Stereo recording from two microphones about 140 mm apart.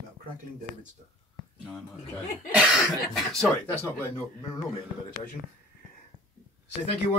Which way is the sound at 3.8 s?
15° left (ahead or behind).